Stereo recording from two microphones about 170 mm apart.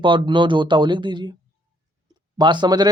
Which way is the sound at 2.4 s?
25° right (ahead or behind).